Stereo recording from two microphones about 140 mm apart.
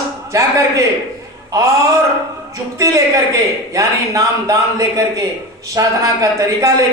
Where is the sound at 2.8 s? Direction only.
20° right (ahead or behind).